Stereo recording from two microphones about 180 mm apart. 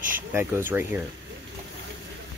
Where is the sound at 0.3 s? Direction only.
10° right (ahead or behind).